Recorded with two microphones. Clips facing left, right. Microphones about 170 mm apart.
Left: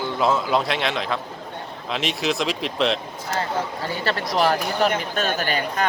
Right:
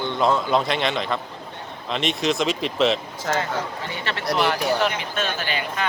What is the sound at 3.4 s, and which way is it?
Speech, 35° left (ahead or behind).